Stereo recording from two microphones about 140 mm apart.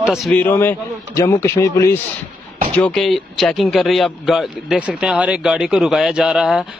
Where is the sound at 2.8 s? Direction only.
5° left (ahead or behind).